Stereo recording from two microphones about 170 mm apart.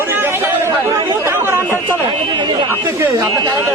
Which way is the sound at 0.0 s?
15° right (ahead or behind).